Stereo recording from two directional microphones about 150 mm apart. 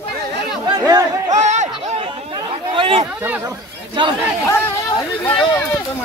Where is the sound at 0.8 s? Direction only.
20° right (ahead or behind).